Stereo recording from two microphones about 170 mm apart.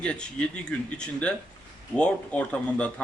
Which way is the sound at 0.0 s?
5° left (ahead or behind).